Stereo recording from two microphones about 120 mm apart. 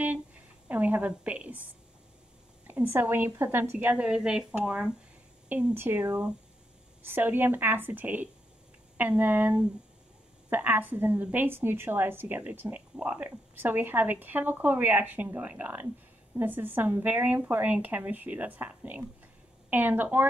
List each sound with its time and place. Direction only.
0.7 s a woman's voice: 15° right (ahead or behind)
7.1 s a woman's voice: 15° right (ahead or behind)